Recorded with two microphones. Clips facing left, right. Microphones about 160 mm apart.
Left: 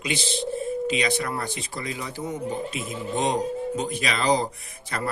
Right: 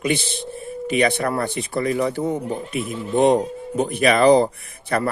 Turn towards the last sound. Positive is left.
turn(degrees=-60)  # may be behind; listen again after turning